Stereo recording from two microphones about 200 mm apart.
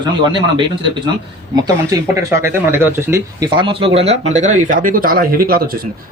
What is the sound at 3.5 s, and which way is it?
Speech, 25° right (ahead or behind).